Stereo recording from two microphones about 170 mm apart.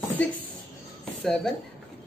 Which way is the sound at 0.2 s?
10° left (ahead or behind).